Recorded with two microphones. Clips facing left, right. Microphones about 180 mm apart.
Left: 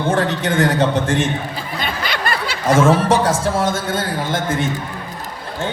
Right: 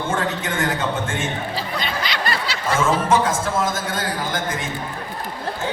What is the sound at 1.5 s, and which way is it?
Snicker, 50° left (ahead or behind).